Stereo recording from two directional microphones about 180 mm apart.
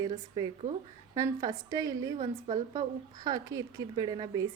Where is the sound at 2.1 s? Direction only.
35° right (ahead or behind).